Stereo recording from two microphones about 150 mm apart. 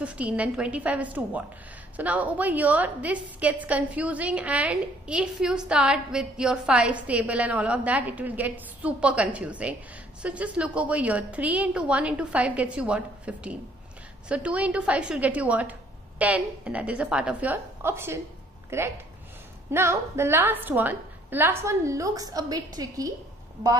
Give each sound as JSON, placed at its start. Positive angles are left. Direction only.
{"t": 0.0, "sound": "a woman's voice", "side_deg": -10}